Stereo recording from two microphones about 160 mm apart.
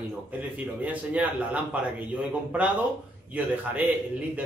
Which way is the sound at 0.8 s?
10° right (ahead or behind).